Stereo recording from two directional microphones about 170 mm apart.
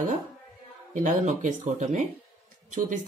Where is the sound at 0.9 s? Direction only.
45° right (ahead or behind).